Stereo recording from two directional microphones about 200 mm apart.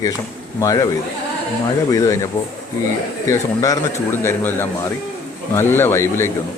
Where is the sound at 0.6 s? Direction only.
15° left (ahead or behind).